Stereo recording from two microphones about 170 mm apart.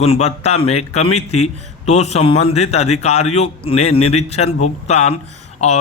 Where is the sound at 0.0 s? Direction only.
40° left (ahead or behind).